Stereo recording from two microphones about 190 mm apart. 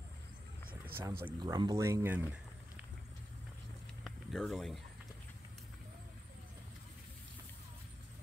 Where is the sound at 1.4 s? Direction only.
20° right (ahead or behind).